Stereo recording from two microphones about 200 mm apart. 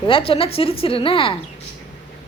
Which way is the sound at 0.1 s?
25° left (ahead or behind).